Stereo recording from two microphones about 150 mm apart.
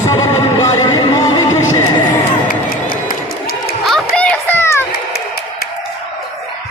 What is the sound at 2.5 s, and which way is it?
Run, 80° left.